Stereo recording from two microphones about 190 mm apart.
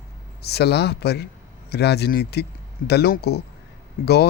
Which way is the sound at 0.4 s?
60° left (ahead or behind).